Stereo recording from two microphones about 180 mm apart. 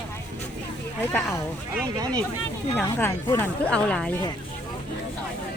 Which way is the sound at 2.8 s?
10° left (ahead or behind).